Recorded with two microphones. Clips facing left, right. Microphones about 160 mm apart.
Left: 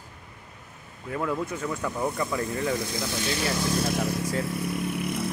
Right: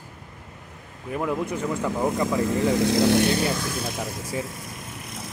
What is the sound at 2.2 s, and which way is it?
Speech, 90° right.